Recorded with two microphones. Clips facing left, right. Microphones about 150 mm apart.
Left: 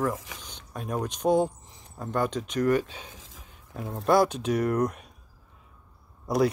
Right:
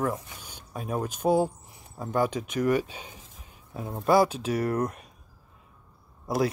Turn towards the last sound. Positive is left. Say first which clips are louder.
# left 2 dB
turn(degrees=0)  # may be behind; listen again after turning